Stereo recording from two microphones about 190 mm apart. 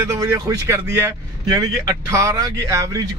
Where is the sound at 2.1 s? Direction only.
15° right (ahead or behind).